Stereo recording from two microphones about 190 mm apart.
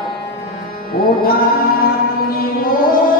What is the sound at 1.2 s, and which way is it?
Music, 50° left (ahead or behind).